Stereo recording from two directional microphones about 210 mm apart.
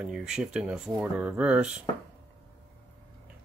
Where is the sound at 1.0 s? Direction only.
5° right (ahead or behind).